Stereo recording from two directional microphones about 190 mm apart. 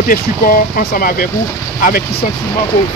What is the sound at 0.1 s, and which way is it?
Speech, 45° left (ahead or behind).